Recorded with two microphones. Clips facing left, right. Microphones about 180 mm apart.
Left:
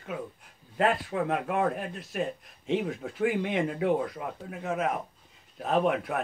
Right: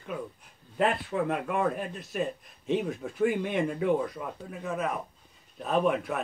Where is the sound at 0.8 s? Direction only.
50° left (ahead or behind).